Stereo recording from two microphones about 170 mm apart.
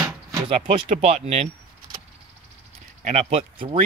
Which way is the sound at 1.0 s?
35° right (ahead or behind).